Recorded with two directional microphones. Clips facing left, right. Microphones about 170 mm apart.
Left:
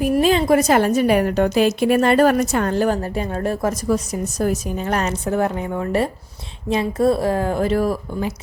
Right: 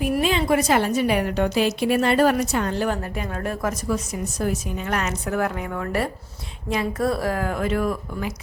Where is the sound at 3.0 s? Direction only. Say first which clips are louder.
Left 5 dB; 30° left (ahead or behind).